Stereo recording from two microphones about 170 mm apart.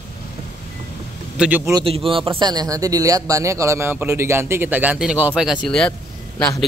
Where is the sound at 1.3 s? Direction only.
10° right (ahead or behind).